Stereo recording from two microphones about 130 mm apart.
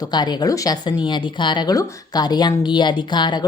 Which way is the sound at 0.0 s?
35° left (ahead or behind).